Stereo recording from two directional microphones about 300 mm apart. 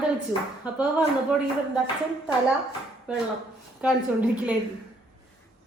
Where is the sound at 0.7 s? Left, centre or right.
Centre.